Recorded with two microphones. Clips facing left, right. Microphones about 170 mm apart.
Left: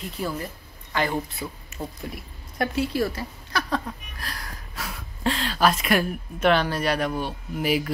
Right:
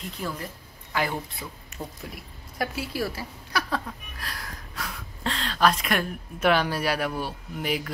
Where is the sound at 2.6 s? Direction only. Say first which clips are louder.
Left 5 dB; 5° right (ahead or behind).